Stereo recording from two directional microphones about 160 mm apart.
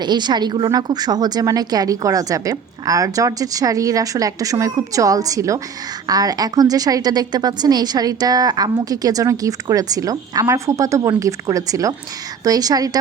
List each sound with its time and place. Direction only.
0.0 s a woman's voice: 25° right (ahead or behind)